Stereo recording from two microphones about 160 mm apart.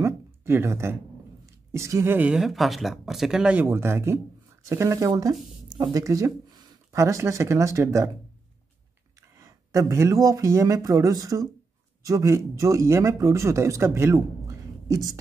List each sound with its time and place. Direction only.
0.0 s a sound: 15° right (ahead or behind)
1.4 s speech: 20° right (ahead or behind)
9.4 s speech: 20° right (ahead or behind)